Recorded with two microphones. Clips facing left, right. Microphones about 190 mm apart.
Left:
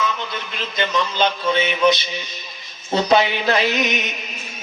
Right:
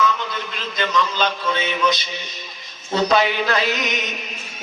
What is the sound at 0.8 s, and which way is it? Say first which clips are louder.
A man's voice: left 1 dB; 25° left (ahead or behind).